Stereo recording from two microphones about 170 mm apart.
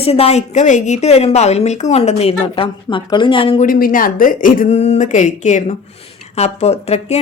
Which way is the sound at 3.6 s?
55° left (ahead or behind).